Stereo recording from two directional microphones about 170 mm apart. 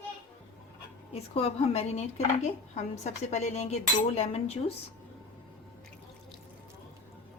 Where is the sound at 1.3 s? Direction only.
35° left (ahead or behind).